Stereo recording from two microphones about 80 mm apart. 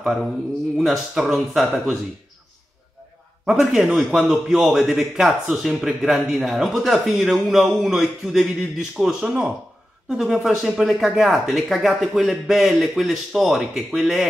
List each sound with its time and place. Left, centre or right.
0.0 s a man's voice: centre
3.4 s a man's voice: centre